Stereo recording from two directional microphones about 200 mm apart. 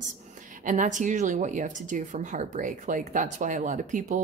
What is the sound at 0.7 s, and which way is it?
Speech, 40° right (ahead or behind).